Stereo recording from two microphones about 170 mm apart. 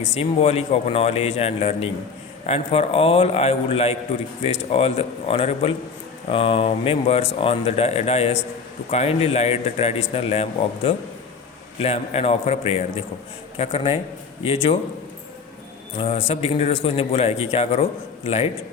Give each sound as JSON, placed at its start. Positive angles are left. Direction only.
{"t": 0.1, "sound": "a man's voice", "side_deg": 35}
{"t": 16.0, "sound": "a man's voice", "side_deg": 40}